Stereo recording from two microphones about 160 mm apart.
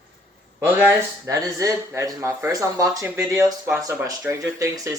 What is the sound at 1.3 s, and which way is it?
Speech, 20° right (ahead or behind).